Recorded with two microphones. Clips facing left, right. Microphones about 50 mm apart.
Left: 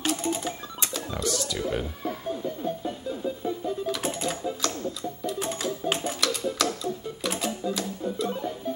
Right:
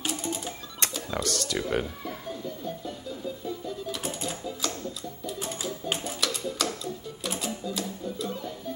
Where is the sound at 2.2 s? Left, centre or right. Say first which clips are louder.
Left 6 dB; left.